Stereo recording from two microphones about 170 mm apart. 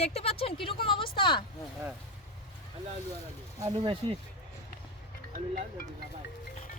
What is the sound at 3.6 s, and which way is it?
Speech, 25° right (ahead or behind).